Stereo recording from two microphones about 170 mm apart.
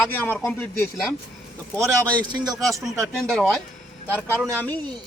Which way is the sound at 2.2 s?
25° right (ahead or behind).